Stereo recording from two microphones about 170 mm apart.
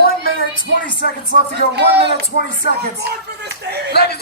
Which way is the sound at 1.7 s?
75° right (ahead or behind).